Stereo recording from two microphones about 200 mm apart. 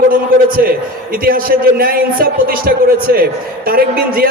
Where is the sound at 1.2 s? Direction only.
45° right (ahead or behind).